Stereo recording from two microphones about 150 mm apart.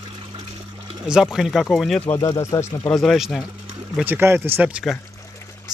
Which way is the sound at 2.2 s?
25° left (ahead or behind).